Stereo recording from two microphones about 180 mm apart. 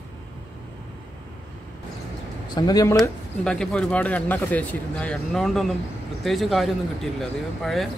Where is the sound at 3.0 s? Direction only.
5° left (ahead or behind).